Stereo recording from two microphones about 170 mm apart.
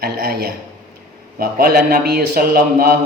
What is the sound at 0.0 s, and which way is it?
A man's voice, 65° right (ahead or behind).